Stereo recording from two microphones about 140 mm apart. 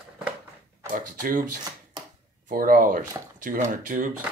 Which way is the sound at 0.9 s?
85° right.